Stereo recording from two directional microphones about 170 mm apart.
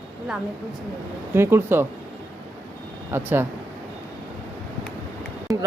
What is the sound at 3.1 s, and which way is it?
Speech, 10° right (ahead or behind).